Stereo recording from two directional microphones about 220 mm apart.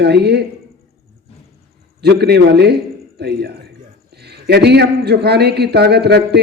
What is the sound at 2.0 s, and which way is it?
Speech, 50° right (ahead or behind).